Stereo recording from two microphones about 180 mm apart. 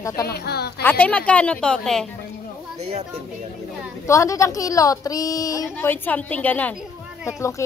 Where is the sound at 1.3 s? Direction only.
5° left (ahead or behind).